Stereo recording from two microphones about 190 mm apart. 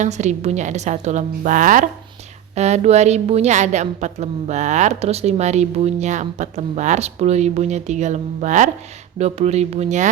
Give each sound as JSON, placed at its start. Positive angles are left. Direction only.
{"t": 0.0, "sound": "a woman's voice", "side_deg": -40}